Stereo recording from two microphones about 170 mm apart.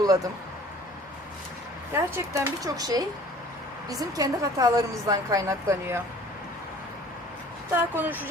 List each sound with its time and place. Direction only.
1.9 s a woman's voice: 15° right (ahead or behind)
7.7 s speech: 10° right (ahead or behind)